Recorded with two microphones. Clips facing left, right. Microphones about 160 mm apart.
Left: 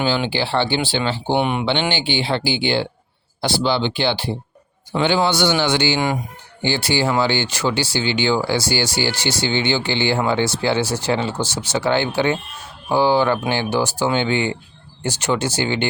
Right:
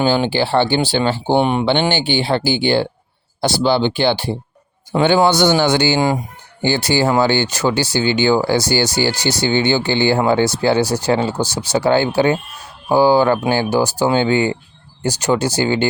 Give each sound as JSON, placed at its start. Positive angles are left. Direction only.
{"t": 0.0, "sound": "speech", "side_deg": -40}
{"t": 1.7, "sound": "speech", "side_deg": -45}